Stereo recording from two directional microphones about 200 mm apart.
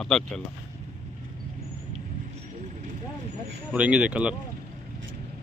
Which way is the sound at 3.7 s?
5° right (ahead or behind).